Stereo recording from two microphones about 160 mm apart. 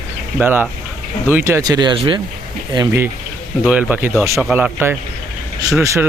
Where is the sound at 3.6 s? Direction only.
10° right (ahead or behind).